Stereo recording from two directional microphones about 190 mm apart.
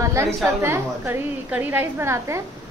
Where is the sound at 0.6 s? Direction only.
15° right (ahead or behind).